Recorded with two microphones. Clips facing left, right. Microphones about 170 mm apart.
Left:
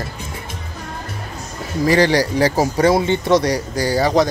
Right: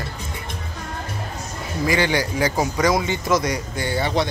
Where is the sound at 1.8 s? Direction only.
35° left (ahead or behind).